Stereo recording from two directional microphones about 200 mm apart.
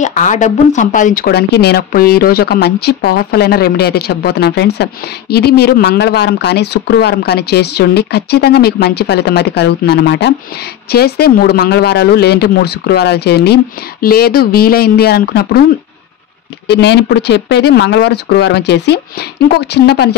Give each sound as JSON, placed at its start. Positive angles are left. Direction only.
{"t": 0.0, "sound": "speech", "side_deg": 40}
{"t": 16.6, "sound": "speech", "side_deg": 55}